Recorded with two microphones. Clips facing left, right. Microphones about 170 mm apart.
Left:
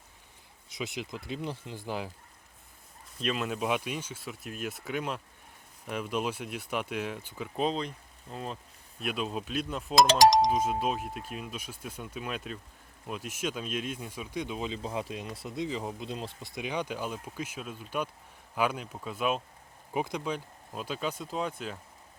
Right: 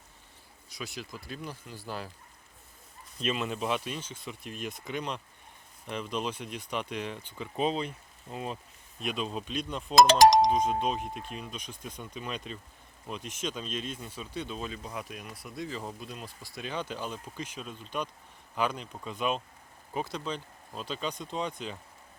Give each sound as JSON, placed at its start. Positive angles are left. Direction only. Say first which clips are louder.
{"t": 0.7, "sound": "speech", "louder": "left 4 dB", "side_deg": 20}
{"t": 3.2, "sound": "speech", "louder": "even", "side_deg": 0}
{"t": 9.9, "sound": "speech", "louder": "right 2 dB", "side_deg": -55}
{"t": 10.5, "sound": "speech", "louder": "right 1 dB", "side_deg": 5}
{"t": 14.8, "sound": "speech", "louder": "left 5 dB", "side_deg": 25}